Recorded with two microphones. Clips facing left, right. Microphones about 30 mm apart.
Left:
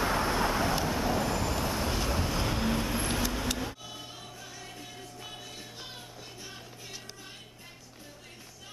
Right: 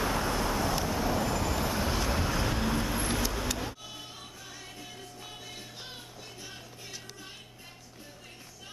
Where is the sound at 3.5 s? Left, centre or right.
Centre.